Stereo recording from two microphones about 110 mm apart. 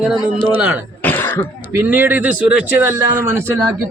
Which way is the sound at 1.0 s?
20° left (ahead or behind).